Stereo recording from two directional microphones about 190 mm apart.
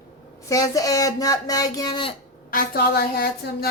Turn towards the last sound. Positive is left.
turn(degrees=55)  # may be behind; listen again after turning